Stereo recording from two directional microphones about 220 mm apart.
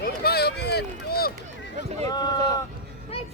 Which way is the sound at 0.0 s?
45° left (ahead or behind).